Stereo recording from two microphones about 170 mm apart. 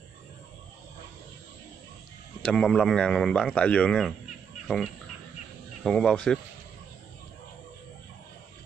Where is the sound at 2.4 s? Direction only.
5° left (ahead or behind).